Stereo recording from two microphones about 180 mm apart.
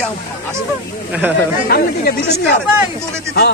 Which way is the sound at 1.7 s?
60° left (ahead or behind).